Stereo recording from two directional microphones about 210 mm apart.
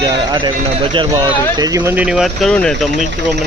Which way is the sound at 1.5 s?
15° right (ahead or behind).